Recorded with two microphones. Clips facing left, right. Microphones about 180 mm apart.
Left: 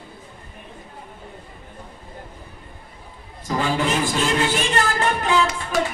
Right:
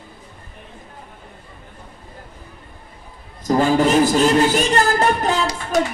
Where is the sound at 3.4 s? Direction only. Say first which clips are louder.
Right 7 dB; 40° right (ahead or behind).